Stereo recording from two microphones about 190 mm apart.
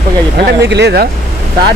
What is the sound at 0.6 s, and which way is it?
Speech, 60° right (ahead or behind).